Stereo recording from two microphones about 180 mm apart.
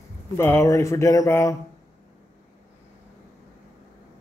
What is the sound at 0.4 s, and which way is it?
Speech, 15° left (ahead or behind).